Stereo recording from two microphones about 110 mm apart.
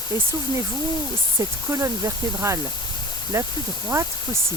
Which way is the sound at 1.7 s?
30° right (ahead or behind).